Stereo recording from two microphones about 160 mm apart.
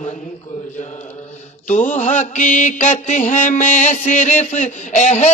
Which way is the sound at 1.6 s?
50° left (ahead or behind).